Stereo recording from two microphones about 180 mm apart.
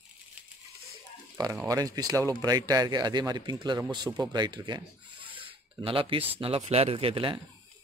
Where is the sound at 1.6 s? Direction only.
20° right (ahead or behind).